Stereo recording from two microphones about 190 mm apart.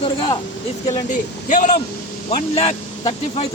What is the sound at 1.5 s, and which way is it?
Speech, 40° left (ahead or behind).